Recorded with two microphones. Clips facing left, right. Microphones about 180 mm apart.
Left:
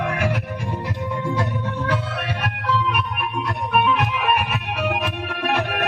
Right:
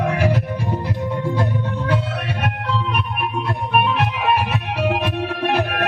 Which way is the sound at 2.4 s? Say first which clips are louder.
Left 1 dB; 25° right (ahead or behind).